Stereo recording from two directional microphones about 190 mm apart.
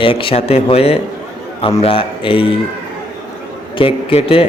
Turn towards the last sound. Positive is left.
turn(degrees=30)  # may be behind; listen again after turning